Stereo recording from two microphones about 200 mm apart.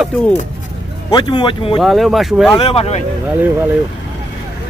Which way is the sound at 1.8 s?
Centre (ahead or behind).